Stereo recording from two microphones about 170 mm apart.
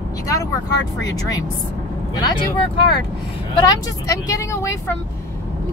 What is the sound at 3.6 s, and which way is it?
Speech, 20° left (ahead or behind).